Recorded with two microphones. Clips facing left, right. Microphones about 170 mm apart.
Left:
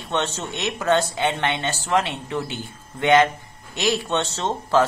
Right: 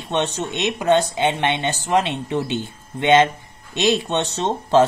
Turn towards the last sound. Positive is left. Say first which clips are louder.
# right 3 dB
turn(degrees=-20)  # may be behind; listen again after turning